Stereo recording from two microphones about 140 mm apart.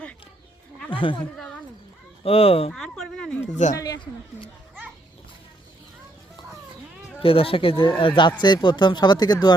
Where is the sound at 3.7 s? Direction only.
25° left (ahead or behind).